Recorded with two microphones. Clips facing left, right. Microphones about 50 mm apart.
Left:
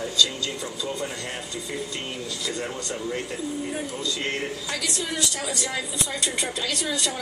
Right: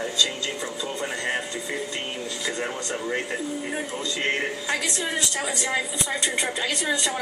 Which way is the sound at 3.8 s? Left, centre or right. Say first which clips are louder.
Right 1 dB; right.